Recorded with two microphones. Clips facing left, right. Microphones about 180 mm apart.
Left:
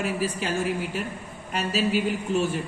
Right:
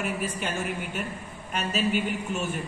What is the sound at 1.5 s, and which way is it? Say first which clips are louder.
Speech: left 2 dB; 35° left (ahead or behind).